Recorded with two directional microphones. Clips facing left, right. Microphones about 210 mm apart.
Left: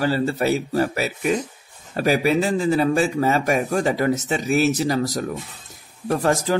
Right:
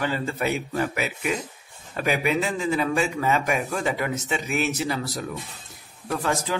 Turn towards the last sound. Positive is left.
turn(degrees=40)  # may be behind; listen again after turning